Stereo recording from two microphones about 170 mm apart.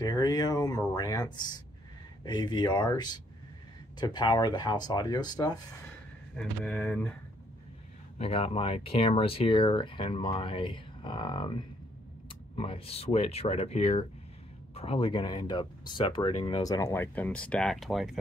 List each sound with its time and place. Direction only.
0.0 s speech: 20° left (ahead or behind)
6.3 s speech: 5° left (ahead or behind)
8.2 s speech: 35° left (ahead or behind); by 18.1 s centre (ahead or behind)